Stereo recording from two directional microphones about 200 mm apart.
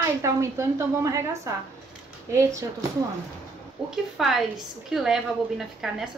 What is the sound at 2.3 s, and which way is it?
Speech, 15° right (ahead or behind).